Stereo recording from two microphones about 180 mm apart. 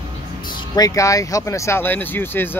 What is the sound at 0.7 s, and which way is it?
Speech, 20° left (ahead or behind).